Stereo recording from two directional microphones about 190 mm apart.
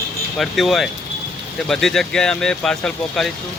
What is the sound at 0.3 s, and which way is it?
Speech, centre (ahead or behind).